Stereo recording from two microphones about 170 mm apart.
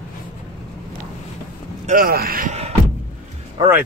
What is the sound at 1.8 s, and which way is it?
Speech, 55° right (ahead or behind).